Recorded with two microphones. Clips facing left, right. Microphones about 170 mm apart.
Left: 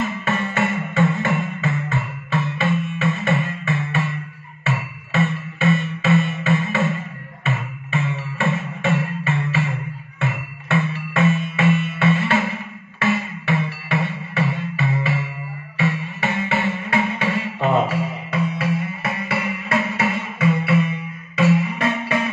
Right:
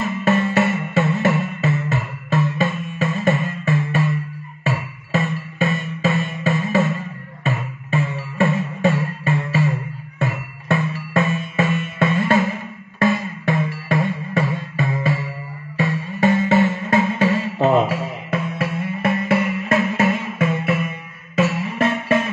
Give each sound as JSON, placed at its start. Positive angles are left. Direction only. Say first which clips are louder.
{"t": 0.9, "sound": "music", "louder": "right 2 dB", "side_deg": -35}